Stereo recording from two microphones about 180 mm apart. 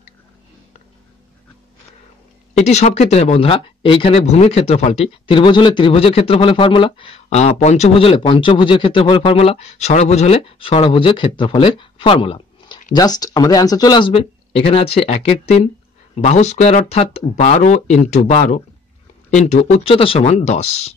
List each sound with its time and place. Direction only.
2.5 s speech: 40° left (ahead or behind)